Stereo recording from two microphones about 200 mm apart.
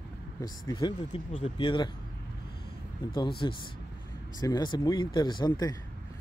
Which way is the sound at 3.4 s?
20° left (ahead or behind).